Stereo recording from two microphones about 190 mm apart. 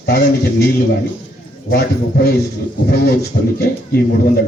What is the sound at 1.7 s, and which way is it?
Speech, 55° left (ahead or behind).